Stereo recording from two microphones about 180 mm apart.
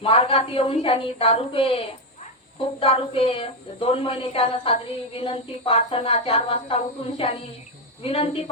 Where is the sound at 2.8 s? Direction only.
30° left (ahead or behind).